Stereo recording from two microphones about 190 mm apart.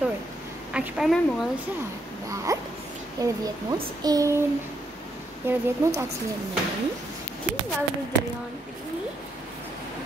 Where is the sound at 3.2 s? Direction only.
20° right (ahead or behind).